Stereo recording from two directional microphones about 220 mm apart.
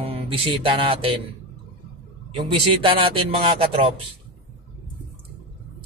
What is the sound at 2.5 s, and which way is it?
Speech, 25° right (ahead or behind).